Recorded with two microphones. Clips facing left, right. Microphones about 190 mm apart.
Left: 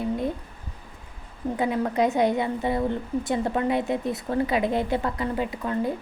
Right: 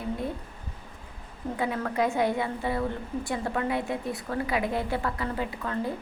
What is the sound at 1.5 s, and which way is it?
A woman's voice, 20° left (ahead or behind).